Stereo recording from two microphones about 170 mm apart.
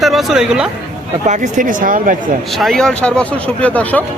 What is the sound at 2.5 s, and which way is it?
Speech, centre (ahead or behind).